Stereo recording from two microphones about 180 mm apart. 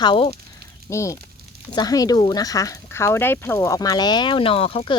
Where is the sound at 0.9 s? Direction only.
15° left (ahead or behind).